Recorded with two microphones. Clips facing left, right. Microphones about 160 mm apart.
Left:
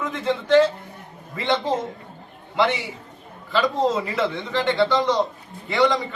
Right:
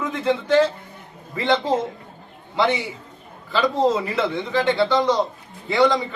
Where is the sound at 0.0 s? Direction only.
10° right (ahead or behind).